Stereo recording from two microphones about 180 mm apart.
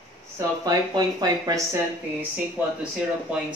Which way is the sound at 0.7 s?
20° right (ahead or behind).